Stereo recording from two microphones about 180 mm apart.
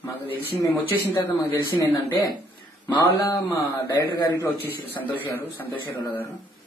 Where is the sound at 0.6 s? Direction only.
20° left (ahead or behind).